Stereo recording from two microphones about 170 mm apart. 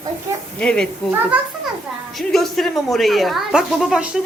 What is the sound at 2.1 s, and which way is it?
A woman's voice, centre (ahead or behind).